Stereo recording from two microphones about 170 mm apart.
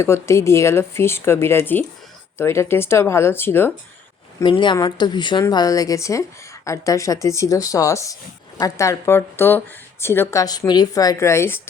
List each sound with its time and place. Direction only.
0.0 s speech: 15° left (ahead or behind)
4.4 s speech: 30° left (ahead or behind)